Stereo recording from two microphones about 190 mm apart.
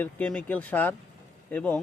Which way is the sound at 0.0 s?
5° left (ahead or behind).